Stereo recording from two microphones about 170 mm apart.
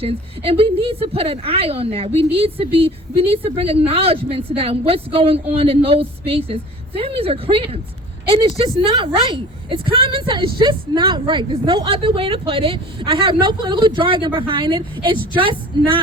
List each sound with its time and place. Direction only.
0.0 s a woman's voice: 35° right (ahead or behind)